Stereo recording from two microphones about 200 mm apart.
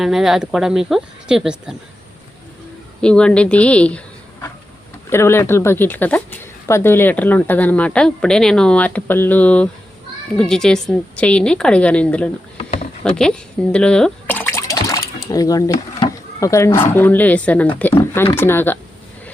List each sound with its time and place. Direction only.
0.0 s a woman's voice: centre (ahead or behind)
3.0 s a woman's voice: 5° left (ahead or behind)
12.5 s a sound: 30° left (ahead or behind)
13.0 s speech: 5° left (ahead or behind)